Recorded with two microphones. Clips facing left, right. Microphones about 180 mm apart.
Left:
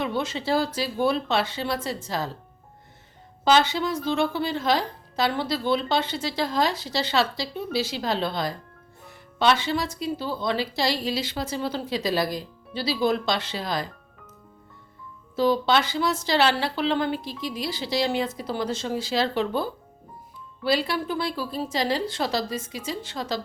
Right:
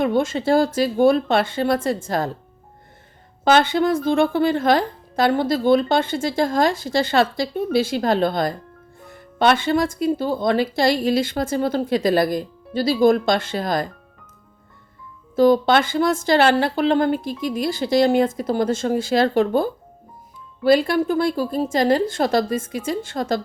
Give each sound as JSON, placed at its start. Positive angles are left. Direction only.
{"t": 0.0, "sound": "speech", "side_deg": -50}
{"t": 3.4, "sound": "speech", "side_deg": -55}
{"t": 15.4, "sound": "speech", "side_deg": -50}